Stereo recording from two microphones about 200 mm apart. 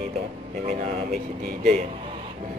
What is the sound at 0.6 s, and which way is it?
Speech, 35° right (ahead or behind).